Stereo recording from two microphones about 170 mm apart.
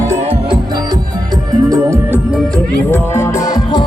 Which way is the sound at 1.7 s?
15° right (ahead or behind).